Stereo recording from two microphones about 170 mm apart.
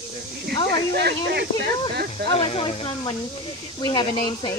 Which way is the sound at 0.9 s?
75° right (ahead or behind).